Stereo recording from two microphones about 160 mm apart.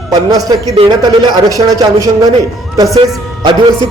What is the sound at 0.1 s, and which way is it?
A man's voice, 25° right (ahead or behind).